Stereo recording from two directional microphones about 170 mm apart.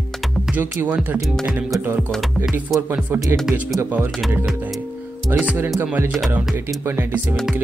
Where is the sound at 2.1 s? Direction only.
Centre (ahead or behind).